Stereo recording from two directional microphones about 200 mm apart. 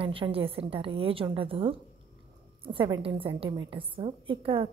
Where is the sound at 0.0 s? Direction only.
25° right (ahead or behind).